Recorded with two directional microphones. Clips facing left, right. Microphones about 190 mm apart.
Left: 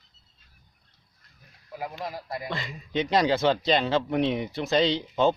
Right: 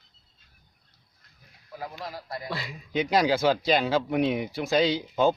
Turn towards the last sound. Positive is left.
turn(degrees=-5)  # may be behind; listen again after turning